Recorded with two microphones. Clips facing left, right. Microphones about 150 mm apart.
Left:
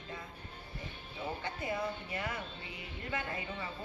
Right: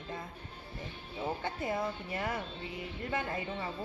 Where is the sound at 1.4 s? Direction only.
45° right (ahead or behind).